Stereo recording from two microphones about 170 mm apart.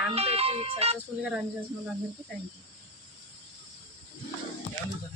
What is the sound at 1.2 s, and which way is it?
Speech, 5° right (ahead or behind).